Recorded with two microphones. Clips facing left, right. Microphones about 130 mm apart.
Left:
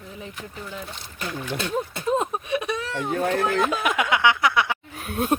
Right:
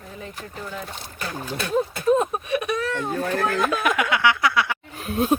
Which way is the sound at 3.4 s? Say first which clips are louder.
Right 1 dB; 20° left (ahead or behind).